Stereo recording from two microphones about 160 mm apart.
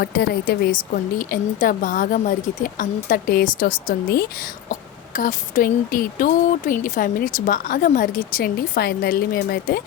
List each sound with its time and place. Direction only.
0.0 s a woman's voice: 75° left (ahead or behind)
1.3 s a woman's voice: 60° left (ahead or behind)